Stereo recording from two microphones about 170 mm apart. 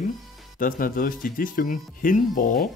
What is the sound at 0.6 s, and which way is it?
Speech, 55° left (ahead or behind).